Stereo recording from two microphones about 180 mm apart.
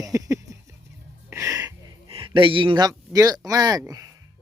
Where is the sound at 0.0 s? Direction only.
15° right (ahead or behind).